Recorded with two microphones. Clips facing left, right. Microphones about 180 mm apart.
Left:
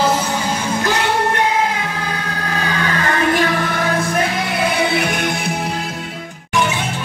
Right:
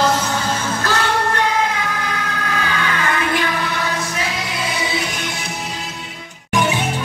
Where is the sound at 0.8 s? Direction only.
20° left (ahead or behind).